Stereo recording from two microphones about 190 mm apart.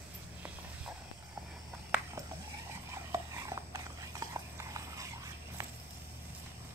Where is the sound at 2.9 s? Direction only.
15° right (ahead or behind).